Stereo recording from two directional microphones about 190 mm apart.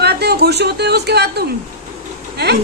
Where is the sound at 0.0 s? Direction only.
60° right (ahead or behind).